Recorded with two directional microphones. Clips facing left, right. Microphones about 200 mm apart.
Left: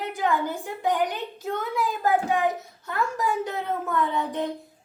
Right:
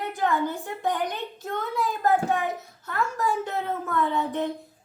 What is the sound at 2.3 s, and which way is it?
A child's voice, 15° left (ahead or behind).